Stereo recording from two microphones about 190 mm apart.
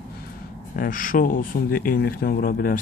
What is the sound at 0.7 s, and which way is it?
Speech, 45° left (ahead or behind).